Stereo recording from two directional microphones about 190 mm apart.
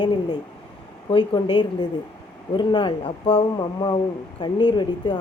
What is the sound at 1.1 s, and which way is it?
A woman's voice, 25° left (ahead or behind).